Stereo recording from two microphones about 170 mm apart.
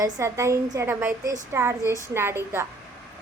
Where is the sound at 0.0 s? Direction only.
15° right (ahead or behind).